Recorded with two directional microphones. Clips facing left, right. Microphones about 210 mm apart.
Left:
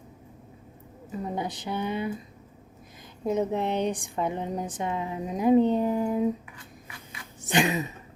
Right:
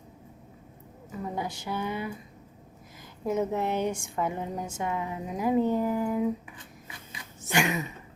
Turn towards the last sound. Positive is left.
turn(degrees=20)  # may be behind; listen again after turning